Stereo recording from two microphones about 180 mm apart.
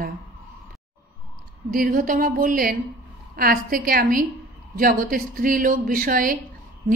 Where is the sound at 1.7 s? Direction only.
50° right (ahead or behind).